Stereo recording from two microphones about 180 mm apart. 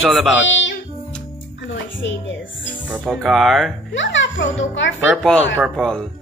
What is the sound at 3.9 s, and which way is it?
Speech, 90° left.